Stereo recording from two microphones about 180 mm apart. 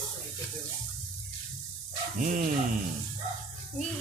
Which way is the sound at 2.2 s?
45° right (ahead or behind).